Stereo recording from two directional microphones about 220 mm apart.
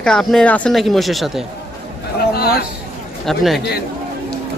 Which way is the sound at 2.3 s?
45° left (ahead or behind).